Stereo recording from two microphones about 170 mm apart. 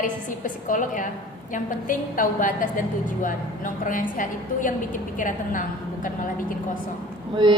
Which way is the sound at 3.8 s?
50° left (ahead or behind).